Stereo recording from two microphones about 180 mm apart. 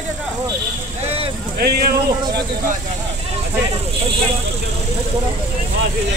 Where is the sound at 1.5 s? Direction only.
60° right (ahead or behind).